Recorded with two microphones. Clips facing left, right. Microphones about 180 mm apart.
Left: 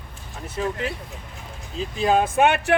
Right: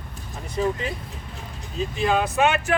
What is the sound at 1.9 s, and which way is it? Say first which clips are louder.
Speech: left 3 dB; 40° left (ahead or behind).